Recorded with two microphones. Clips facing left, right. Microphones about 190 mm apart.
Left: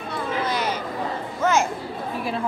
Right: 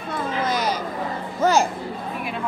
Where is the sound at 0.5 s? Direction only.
40° right (ahead or behind).